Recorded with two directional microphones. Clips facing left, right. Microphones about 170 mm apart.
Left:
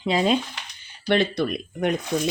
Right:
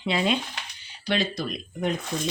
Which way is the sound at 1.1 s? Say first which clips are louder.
Left 6 dB; 60° left (ahead or behind).